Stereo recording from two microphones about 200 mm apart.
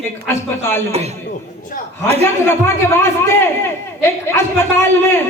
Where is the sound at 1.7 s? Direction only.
45° left (ahead or behind).